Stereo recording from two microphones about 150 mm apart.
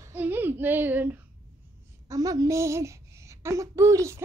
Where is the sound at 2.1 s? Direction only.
25° right (ahead or behind).